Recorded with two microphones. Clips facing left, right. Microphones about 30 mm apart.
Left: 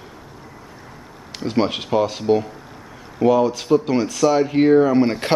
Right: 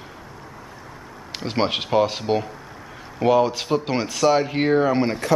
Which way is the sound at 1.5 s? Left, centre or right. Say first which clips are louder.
Left 2 dB; right.